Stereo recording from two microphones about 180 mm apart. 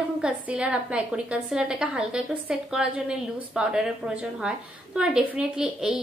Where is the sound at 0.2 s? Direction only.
5° right (ahead or behind).